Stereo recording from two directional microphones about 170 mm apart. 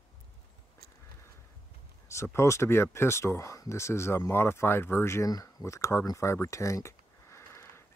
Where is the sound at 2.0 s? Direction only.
15° left (ahead or behind).